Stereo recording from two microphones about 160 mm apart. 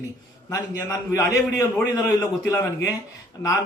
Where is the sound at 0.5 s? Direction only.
20° left (ahead or behind).